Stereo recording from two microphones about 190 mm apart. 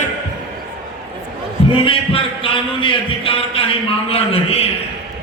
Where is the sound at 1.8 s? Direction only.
30° left (ahead or behind).